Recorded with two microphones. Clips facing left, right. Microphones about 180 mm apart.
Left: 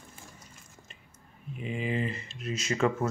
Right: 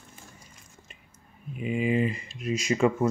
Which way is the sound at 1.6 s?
10° right (ahead or behind).